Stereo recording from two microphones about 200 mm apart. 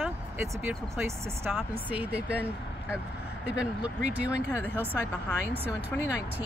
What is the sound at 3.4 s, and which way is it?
Speech, 5° right (ahead or behind).